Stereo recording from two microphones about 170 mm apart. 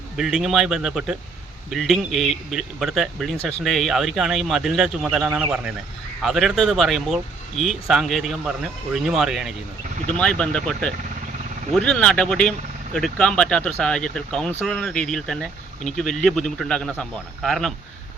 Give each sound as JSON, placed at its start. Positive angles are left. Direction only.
{"t": 0.2, "sound": "speech", "side_deg": -5}